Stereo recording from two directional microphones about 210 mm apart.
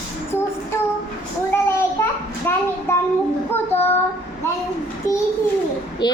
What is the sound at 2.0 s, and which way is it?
Child singing, 15° left (ahead or behind).